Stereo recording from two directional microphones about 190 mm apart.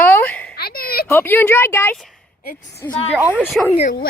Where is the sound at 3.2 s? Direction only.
10° right (ahead or behind).